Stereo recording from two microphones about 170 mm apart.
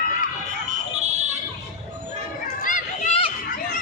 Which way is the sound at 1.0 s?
40° right (ahead or behind).